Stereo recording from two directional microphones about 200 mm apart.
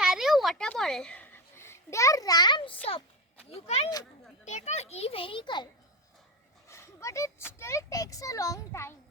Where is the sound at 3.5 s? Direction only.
30° left (ahead or behind); by 8.9 s 15° left (ahead or behind).